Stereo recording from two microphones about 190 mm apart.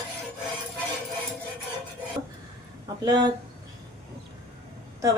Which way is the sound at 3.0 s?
20° right (ahead or behind).